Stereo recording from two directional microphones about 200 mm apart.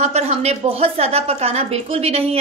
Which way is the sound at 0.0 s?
30° right (ahead or behind).